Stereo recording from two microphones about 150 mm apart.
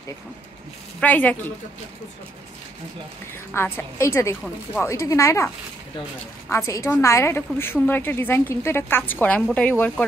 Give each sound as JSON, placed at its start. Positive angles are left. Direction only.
{"t": 1.0, "sound": "a woman's voice", "side_deg": 10}
{"t": 3.5, "sound": "a woman's voice", "side_deg": 15}
{"t": 6.5, "sound": "a woman's voice", "side_deg": 20}